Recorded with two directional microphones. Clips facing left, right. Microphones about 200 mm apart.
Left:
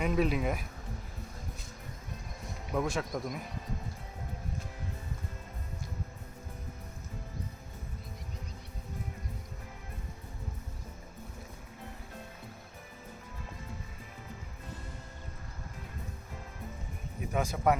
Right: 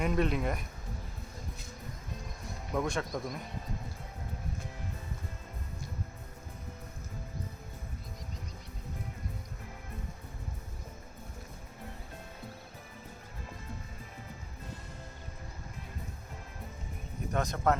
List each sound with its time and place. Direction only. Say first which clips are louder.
0.0 s speech: left 1 dB; centre (ahead or behind)
2.7 s speech: even; 5° left (ahead or behind)
17.3 s speech: left 1 dB; 10° left (ahead or behind)